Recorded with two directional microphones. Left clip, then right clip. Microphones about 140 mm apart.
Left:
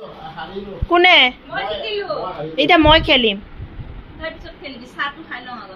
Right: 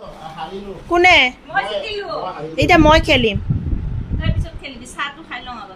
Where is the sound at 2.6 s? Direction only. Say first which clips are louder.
Even; 35° right (ahead or behind).